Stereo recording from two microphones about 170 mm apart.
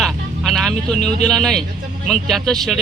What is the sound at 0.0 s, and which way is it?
Vehicle, centre (ahead or behind).